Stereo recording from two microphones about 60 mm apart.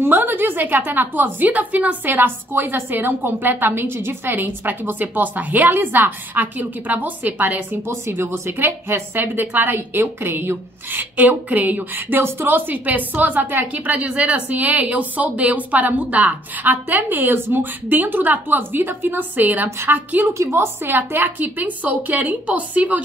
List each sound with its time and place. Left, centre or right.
0.0 s a woman's voice: right
7.8 s a woman's voice: right
9.1 s a woman's voice: right
20.2 s a woman's voice: right